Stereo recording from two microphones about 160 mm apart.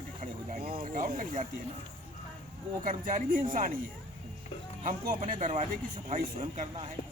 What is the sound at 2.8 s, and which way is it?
Speech, 55° right (ahead or behind).